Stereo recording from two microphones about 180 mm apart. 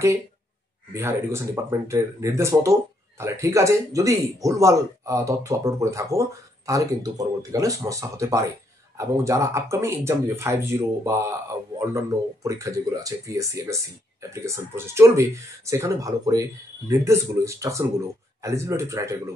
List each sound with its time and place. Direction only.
0.9 s speech: 15° right (ahead or behind)
12.4 s speech: 20° right (ahead or behind)